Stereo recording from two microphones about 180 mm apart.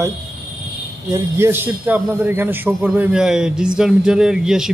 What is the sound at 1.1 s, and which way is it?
A man's voice, 15° right (ahead or behind).